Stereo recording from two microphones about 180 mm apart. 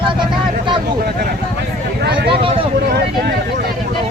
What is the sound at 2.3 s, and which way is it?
Speech, 30° right (ahead or behind).